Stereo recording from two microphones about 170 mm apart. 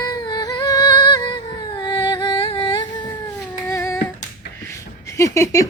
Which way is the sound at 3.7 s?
15° left (ahead or behind).